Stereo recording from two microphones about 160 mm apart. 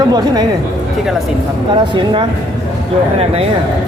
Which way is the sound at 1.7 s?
30° right (ahead or behind).